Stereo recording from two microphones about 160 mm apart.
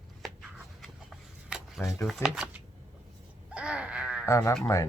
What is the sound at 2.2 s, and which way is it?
Speech, 5° right (ahead or behind).